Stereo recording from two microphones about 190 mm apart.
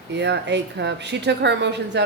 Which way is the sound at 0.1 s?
65° right (ahead or behind).